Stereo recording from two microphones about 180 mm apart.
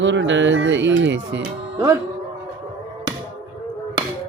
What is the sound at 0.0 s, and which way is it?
Speech, 90° right.